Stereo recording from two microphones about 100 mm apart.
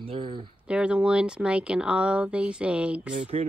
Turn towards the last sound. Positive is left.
turn(degrees=-90)